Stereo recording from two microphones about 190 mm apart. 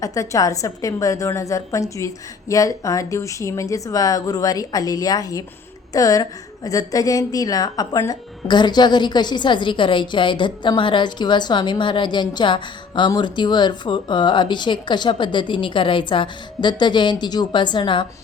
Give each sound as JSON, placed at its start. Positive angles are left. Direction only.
{"t": 0.0, "sound": "a woman's voice", "side_deg": 15}